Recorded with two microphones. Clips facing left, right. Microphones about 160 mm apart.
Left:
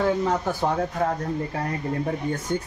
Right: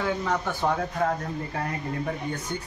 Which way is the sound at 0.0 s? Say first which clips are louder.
Left 4 dB; 35° left (ahead or behind).